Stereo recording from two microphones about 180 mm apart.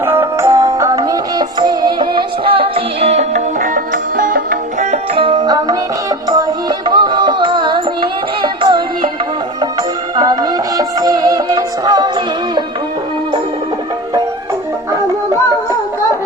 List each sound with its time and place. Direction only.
0.0 s music: 15° right (ahead or behind)
10.2 s music: 20° right (ahead or behind)